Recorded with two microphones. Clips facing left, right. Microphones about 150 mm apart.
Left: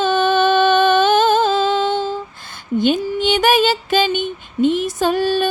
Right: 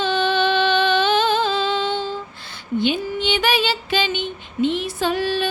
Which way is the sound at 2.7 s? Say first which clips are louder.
Left 4 dB; 45° left (ahead or behind).